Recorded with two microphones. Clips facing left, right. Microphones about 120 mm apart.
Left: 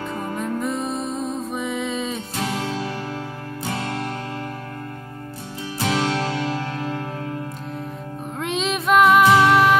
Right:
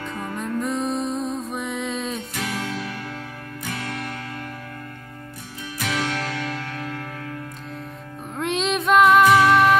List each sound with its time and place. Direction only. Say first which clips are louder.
0.0 s music: left 3 dB; 30° left (ahead or behind)
0.4 s music: right 1 dB; centre (ahead or behind)
2.3 s music: left 3 dB; 25° left (ahead or behind)
5.8 s music: left 4 dB; 30° left (ahead or behind)
8.4 s music: right 1 dB; centre (ahead or behind)
9.2 s music: even; 25° left (ahead or behind)
9.5 s music: even; centre (ahead or behind)